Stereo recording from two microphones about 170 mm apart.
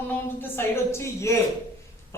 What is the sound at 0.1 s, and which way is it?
A woman's voice, 10° left (ahead or behind).